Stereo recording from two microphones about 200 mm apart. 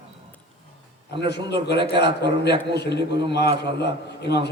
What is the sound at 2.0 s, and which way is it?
A man's voice, 55° left (ahead or behind).